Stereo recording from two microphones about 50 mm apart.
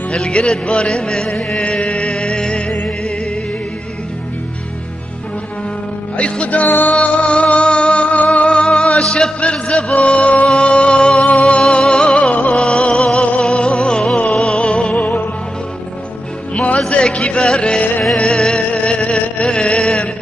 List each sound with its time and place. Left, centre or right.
0.1 s music: centre
6.1 s music: left
7.2 s music: left
9.9 s music: left
11.1 s music: left
11.6 s music: centre
12.5 s music: centre
15.0 s music: left
16.5 s music: left
16.9 s a sound: left
17.6 s music: left